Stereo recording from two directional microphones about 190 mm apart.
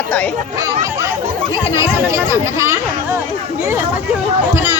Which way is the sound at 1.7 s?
15° right (ahead or behind).